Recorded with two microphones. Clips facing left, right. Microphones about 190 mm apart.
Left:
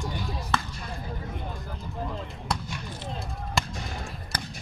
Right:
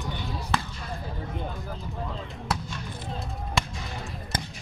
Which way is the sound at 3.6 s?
Centre (ahead or behind).